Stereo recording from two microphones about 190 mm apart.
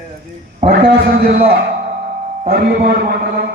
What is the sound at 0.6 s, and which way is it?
Speech, 55° right (ahead or behind).